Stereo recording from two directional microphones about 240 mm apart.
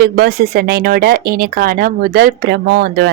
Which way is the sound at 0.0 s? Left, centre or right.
Right.